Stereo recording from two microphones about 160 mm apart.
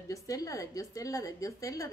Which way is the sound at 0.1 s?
20° left (ahead or behind).